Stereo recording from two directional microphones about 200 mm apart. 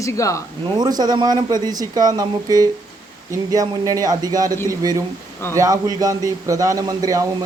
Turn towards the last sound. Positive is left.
turn(degrees=-15)  # may be behind; listen again after turning